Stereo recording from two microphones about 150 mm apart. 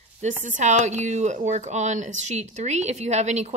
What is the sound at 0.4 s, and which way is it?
Speech, 55° right (ahead or behind).